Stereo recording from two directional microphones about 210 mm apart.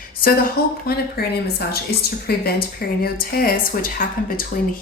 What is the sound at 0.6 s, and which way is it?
A woman's voice, 45° left (ahead or behind).